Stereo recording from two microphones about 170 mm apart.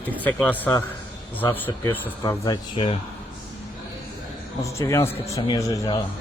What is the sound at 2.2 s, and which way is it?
Speech, 25° left (ahead or behind).